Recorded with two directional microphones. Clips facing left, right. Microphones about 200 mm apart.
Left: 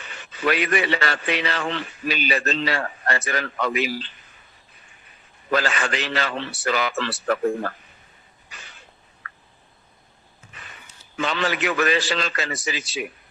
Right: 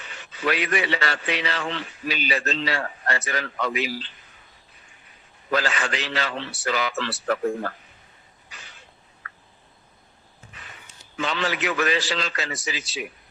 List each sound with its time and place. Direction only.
0.1 s a man's voice: 55° left (ahead or behind)
5.5 s a man's voice: 55° left (ahead or behind)
11.2 s a man's voice: 55° left (ahead or behind)